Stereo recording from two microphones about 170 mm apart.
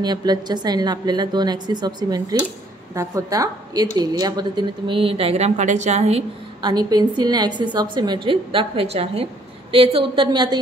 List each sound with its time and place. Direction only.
0.0 s a woman's voice: 25° right (ahead or behind)
6.6 s a woman's voice: 25° right (ahead or behind)